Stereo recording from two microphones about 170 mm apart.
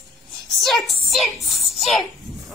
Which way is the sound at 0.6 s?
Centre (ahead or behind).